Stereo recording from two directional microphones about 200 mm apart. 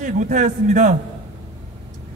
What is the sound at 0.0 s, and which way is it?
Speech, 40° right (ahead or behind).